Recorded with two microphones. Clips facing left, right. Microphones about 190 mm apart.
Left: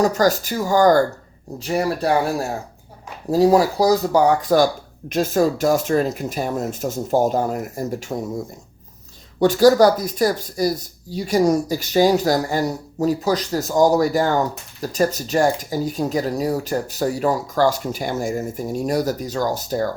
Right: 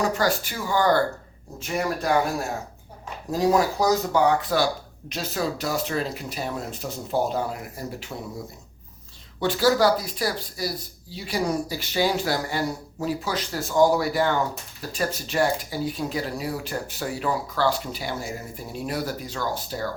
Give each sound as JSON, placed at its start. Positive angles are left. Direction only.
{"t": 0.0, "sound": "speech", "side_deg": 40}
{"t": 3.3, "sound": "speech", "side_deg": 35}
{"t": 9.4, "sound": "speech", "side_deg": 40}